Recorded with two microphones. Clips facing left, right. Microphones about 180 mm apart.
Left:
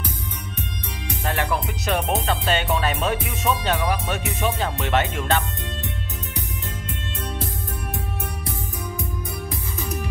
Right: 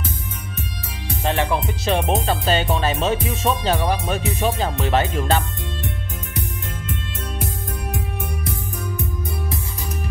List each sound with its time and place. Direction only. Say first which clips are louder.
1.2 s music: right 4 dB; 25° right (ahead or behind)